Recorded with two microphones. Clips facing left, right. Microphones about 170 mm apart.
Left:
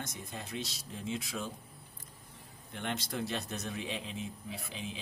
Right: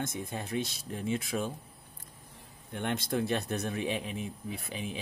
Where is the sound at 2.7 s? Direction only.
55° right (ahead or behind).